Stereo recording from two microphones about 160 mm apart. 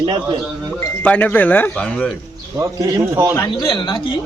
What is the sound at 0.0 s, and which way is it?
Speech, 30° right (ahead or behind).